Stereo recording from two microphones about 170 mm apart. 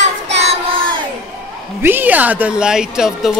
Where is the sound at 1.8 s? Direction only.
10° right (ahead or behind).